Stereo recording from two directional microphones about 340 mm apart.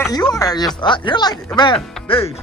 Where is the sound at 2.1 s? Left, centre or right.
Centre.